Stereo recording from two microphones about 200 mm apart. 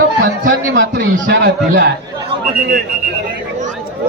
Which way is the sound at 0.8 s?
60° right (ahead or behind).